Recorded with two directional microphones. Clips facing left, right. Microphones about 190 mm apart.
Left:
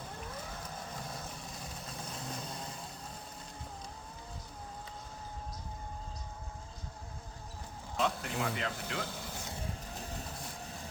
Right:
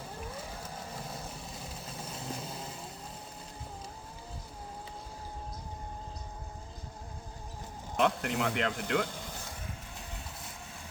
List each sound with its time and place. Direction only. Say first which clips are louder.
0.6 s vehicle: right 1 dB; 5° right (ahead or behind)
7.9 s speech: right 5 dB; 70° right (ahead or behind)
9.9 s train: left 3 dB; 40° left (ahead or behind)